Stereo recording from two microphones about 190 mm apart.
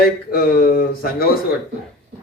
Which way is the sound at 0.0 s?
50° left (ahead or behind).